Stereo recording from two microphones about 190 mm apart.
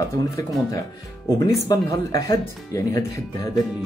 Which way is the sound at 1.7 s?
20° left (ahead or behind).